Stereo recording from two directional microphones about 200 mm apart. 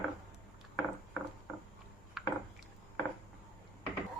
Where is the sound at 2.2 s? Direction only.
Centre (ahead or behind).